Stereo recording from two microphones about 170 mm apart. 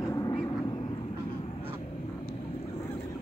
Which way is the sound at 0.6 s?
25° left (ahead or behind).